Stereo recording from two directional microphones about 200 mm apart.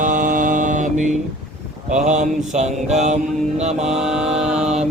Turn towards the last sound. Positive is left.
turn(degrees=-35)  # may be behind; listen again after turning